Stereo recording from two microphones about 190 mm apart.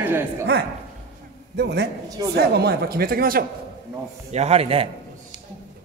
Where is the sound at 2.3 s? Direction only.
60° right (ahead or behind).